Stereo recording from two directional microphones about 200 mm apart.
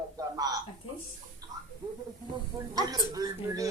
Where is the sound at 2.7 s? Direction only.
20° right (ahead or behind).